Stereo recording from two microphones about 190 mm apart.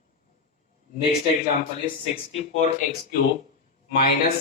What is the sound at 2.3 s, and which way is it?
Speech, 40° left (ahead or behind).